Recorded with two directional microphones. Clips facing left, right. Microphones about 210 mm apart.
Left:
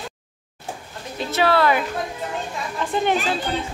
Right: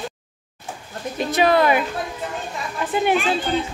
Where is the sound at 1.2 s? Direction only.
15° right (ahead or behind).